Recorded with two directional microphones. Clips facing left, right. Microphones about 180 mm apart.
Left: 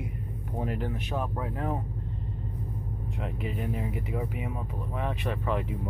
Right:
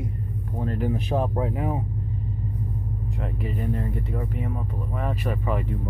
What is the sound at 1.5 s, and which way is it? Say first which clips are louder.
Speech: right 4 dB; 10° right (ahead or behind).